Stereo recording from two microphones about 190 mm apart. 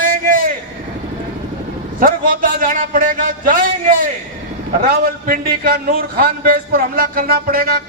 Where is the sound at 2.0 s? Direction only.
50° right (ahead or behind).